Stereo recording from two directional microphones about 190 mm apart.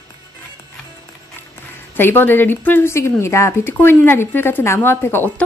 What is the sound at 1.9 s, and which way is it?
Speech, 10° left (ahead or behind).